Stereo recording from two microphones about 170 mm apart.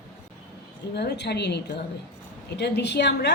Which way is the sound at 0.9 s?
75° left (ahead or behind).